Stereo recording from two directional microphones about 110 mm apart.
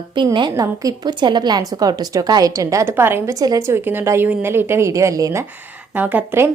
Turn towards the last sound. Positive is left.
turn(degrees=-20)  # may be behind; listen again after turning